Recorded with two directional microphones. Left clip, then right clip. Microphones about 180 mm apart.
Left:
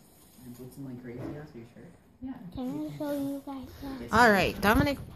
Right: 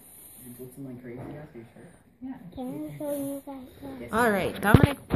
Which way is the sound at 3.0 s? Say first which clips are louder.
Right 2 dB; 55° left (ahead or behind).